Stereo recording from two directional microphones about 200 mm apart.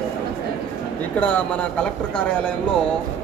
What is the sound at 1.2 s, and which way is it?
Speech, 5° left (ahead or behind).